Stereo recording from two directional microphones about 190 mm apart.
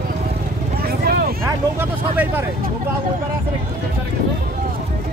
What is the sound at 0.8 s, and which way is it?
Vehicle, 55° right (ahead or behind).